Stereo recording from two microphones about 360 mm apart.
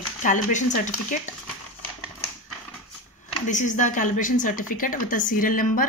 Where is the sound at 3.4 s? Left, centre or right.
Centre.